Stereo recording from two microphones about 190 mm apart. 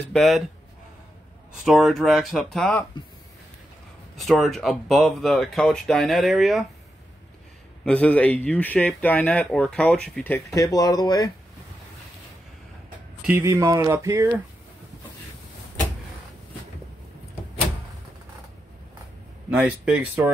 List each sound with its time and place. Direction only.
0.1 s speech: centre (ahead or behind)
1.6 s speech: centre (ahead or behind)
4.2 s speech: centre (ahead or behind)
7.8 s speech: 5° left (ahead or behind)
13.2 s speech: 10° right (ahead or behind)
19.5 s speech: 5° right (ahead or behind)